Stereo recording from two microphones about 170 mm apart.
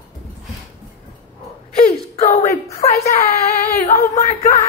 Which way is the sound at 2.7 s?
60° left (ahead or behind).